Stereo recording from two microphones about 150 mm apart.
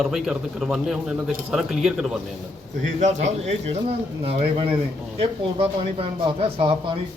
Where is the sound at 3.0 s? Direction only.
50° right (ahead or behind); by 6.9 s 35° right (ahead or behind).